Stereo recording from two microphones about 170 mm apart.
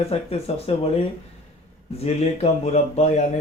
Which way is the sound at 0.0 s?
35° left (ahead or behind).